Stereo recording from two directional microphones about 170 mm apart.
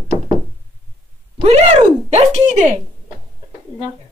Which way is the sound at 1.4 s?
40° right (ahead or behind).